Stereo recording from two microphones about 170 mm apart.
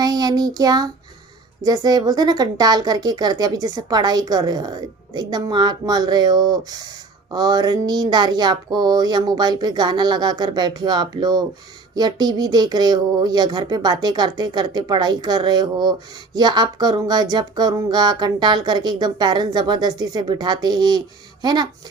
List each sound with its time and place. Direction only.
0.0 s child singing: 25° right (ahead or behind)
1.6 s speech: 20° right (ahead or behind)